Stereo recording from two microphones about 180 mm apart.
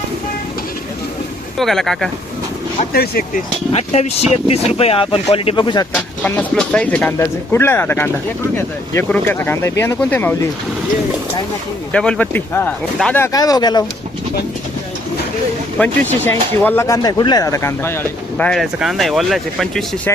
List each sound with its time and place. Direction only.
1.5 s speech: centre (ahead or behind)
2.9 s speech: 55° left (ahead or behind)
3.7 s speech: 35° left (ahead or behind)
6.2 s speech: 10° left (ahead or behind)
11.9 s speech: 5° left (ahead or behind); by 13.8 s 25° left (ahead or behind)
15.8 s speech: 10° left (ahead or behind)
20.1 s speech: 15° left (ahead or behind)